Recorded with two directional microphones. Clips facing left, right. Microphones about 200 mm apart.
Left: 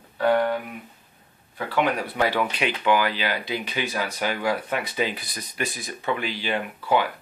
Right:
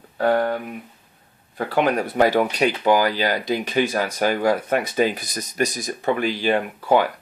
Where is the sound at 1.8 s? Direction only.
45° right (ahead or behind).